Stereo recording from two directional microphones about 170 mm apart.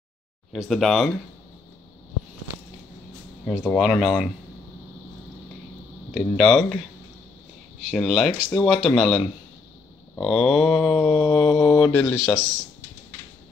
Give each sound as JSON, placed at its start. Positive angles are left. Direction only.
{"t": 0.5, "sound": "speech", "side_deg": 0}
{"t": 3.4, "sound": "speech", "side_deg": 10}
{"t": 6.1, "sound": "speech", "side_deg": 0}
{"t": 7.9, "sound": "speech", "side_deg": 0}
{"t": 10.2, "sound": "speech", "side_deg": 0}